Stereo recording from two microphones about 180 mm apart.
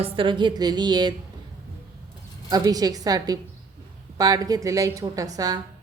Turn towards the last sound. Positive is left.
turn(degrees=-20)  # may be behind; listen again after turning